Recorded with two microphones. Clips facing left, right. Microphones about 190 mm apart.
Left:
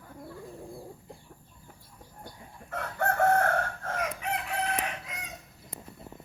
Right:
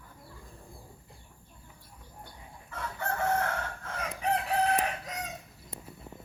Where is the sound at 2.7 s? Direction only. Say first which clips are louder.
Left 5 dB; 65° left (ahead or behind).